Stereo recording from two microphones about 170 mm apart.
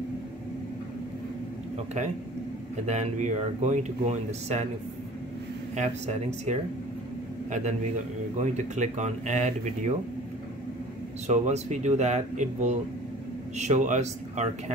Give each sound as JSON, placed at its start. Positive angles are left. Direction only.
{"t": 2.9, "sound": "speech", "side_deg": -45}
{"t": 5.8, "sound": "speech", "side_deg": -40}
{"t": 8.4, "sound": "speech", "side_deg": -45}
{"t": 11.2, "sound": "speech", "side_deg": -40}